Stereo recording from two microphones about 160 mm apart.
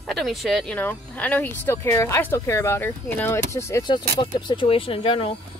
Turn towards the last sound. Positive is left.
turn(degrees=35)  # may be behind; listen again after turning